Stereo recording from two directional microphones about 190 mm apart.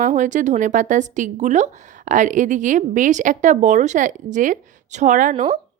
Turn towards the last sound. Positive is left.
turn(degrees=-40)  # may be behind; listen again after turning